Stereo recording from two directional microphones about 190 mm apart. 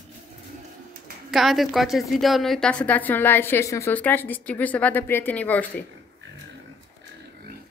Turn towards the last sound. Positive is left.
turn(degrees=10)  # may be behind; listen again after turning